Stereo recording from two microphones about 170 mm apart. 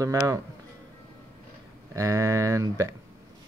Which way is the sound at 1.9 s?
20° right (ahead or behind).